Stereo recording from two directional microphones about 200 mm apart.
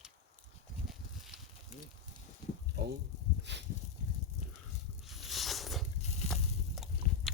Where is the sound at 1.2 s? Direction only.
Centre (ahead or behind).